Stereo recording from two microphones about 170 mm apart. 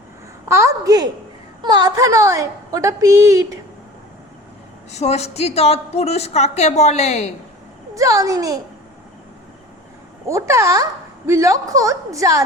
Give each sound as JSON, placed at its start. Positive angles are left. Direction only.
{"t": 0.4, "sound": "a woman's voice", "side_deg": -15}
{"t": 4.9, "sound": "a woman's voice", "side_deg": 40}
{"t": 7.9, "sound": "a woman's voice", "side_deg": -20}
{"t": 10.2, "sound": "a woman's voice", "side_deg": -15}